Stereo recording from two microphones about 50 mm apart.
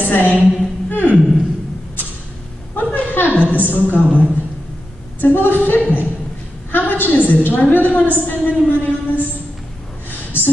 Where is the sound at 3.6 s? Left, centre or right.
Left.